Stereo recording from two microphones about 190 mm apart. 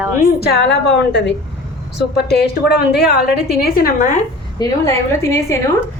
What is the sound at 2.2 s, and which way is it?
A woman's voice, 60° left (ahead or behind).